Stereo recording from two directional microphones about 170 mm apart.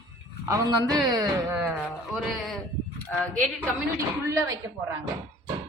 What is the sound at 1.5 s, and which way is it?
Speech, 10° right (ahead or behind).